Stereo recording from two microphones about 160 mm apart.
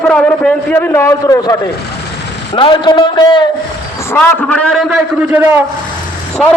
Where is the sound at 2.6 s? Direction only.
30° left (ahead or behind).